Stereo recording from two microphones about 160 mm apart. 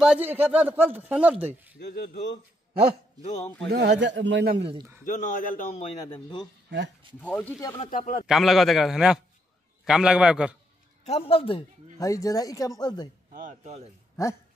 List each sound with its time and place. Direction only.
0.0 s speech: 10° right (ahead or behind)
1.8 s speech: 80° left
3.2 s a man's voice: 45° left (ahead or behind)
3.7 s a man's voice: 90° right
5.0 s a man's voice: 55° left (ahead or behind)
6.0 s a man's voice: 30° left (ahead or behind)
6.7 s a man's voice: 90° right
7.2 s speech: 10° left (ahead or behind)
7.6 s a man's voice: 30° left (ahead or behind)
7.9 s a man's voice: 50° left (ahead or behind)
8.3 s a man's voice: centre (ahead or behind)
11.1 s a man's voice: 35° left (ahead or behind)
12.0 s speech: 20° left (ahead or behind)
13.3 s speech: 50° right (ahead or behind)